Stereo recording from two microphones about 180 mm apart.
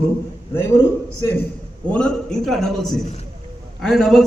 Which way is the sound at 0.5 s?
15° left (ahead or behind).